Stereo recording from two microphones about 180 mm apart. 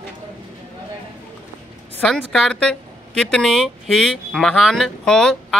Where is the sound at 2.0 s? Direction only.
Centre (ahead or behind).